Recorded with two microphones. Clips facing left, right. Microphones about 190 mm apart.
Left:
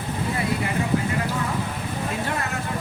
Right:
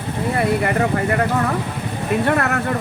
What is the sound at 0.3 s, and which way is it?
Speech, 65° right (ahead or behind).